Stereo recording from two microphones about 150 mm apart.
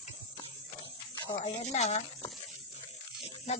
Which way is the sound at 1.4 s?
45° left (ahead or behind).